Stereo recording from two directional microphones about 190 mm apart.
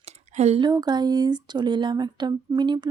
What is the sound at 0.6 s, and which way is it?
Speech, 20° right (ahead or behind).